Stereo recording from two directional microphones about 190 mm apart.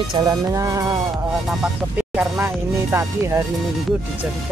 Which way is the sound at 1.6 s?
5° right (ahead or behind).